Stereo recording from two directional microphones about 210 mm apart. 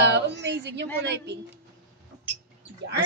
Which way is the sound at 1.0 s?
55° right (ahead or behind).